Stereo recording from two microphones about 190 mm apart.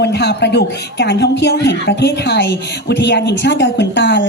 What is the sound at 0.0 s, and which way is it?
A woman's voice, 60° left (ahead or behind).